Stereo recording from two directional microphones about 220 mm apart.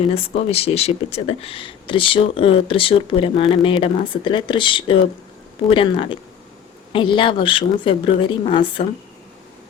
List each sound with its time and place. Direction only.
0.0 s speech: 25° left (ahead or behind)